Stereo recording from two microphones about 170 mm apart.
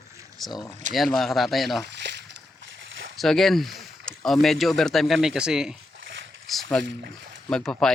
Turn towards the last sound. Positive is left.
turn(degrees=5)  # may be behind; listen again after turning